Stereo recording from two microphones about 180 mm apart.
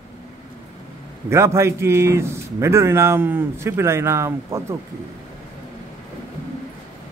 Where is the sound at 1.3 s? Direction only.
15° right (ahead or behind).